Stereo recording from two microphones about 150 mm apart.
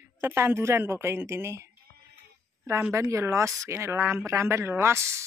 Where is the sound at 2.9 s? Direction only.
20° right (ahead or behind).